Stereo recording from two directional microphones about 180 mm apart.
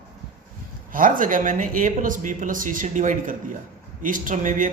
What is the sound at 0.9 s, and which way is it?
Speech, 50° right (ahead or behind).